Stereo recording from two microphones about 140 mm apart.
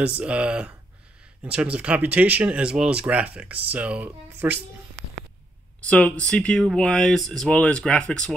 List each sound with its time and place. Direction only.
0.0 s speech: 10° right (ahead or behind)
5.8 s speech: 10° left (ahead or behind)